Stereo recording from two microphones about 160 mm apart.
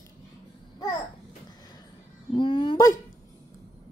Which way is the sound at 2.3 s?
30° left (ahead or behind).